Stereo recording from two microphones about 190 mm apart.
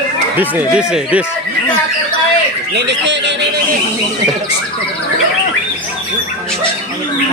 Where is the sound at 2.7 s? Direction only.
65° right (ahead or behind).